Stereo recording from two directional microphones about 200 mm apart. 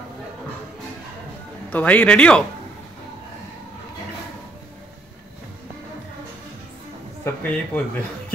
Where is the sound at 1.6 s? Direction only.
5° left (ahead or behind).